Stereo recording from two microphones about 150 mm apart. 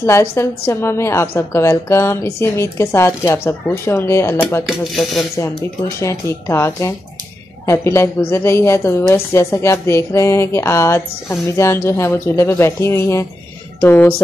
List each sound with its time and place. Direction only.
0.0 s a woman's voice: 15° left (ahead or behind)
4.6 s speech: centre (ahead or behind)
5.9 s a woman's voice: 20° left (ahead or behind)